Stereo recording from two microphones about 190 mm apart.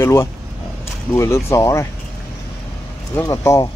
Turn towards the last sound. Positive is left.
turn(degrees=20)  # may be behind; listen again after turning